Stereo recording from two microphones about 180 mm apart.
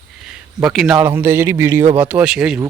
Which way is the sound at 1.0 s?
15° right (ahead or behind).